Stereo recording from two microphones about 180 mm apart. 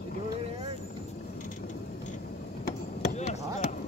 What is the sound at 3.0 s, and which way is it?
Chop, 40° left (ahead or behind).